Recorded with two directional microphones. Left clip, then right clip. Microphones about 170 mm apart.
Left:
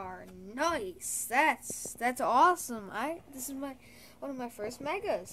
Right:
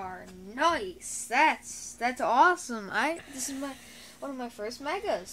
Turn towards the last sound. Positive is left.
turn(degrees=-15)  # may be behind; listen again after turning